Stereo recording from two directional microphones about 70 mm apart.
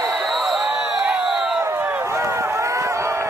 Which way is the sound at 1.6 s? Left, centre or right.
Right.